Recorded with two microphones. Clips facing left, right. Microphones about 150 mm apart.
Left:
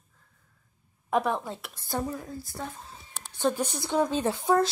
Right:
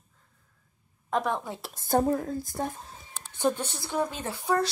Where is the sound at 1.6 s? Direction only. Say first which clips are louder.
Right 7 dB; 45° right (ahead or behind).